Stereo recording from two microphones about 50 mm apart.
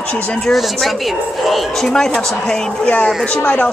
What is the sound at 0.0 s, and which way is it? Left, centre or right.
Speech, left.